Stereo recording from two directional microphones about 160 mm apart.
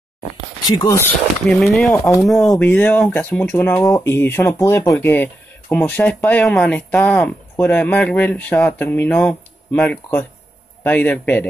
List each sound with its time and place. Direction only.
0.7 s speech: 25° left (ahead or behind)
1.4 s speech: centre (ahead or behind)